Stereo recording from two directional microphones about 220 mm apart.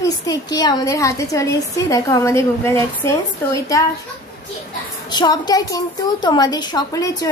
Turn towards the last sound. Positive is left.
turn(degrees=15)  # may be behind; listen again after turning